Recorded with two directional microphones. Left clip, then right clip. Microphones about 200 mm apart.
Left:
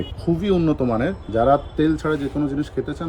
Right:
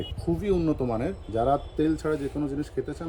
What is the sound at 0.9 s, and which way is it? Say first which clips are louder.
A man's voice: left 7 dB; centre (ahead or behind).